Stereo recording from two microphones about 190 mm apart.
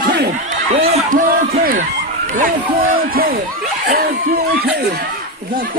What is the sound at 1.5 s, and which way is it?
Speech, 50° right (ahead or behind).